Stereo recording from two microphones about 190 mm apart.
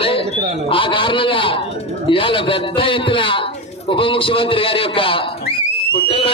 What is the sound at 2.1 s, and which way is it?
A man's voice, 25° left (ahead or behind).